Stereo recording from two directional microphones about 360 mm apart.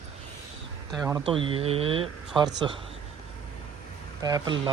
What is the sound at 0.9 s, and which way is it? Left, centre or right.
Speech, centre.